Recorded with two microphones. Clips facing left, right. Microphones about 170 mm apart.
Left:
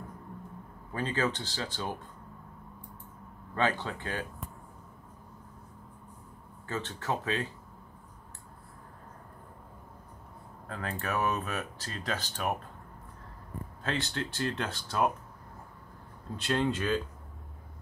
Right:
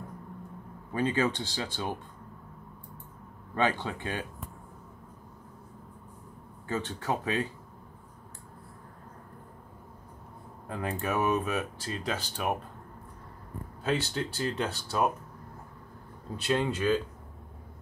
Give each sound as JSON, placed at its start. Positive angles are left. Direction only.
{"t": 0.9, "sound": "speech", "side_deg": -15}
{"t": 3.5, "sound": "speech", "side_deg": -15}
{"t": 6.7, "sound": "speech", "side_deg": -15}
{"t": 10.7, "sound": "speech", "side_deg": -15}
{"t": 13.8, "sound": "speech", "side_deg": -5}
{"t": 16.4, "sound": "speech", "side_deg": -5}